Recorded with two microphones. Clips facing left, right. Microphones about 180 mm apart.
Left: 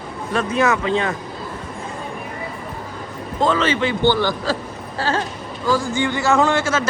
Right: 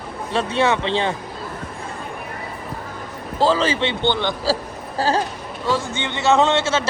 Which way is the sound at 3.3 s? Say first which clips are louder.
Even; 30° right (ahead or behind).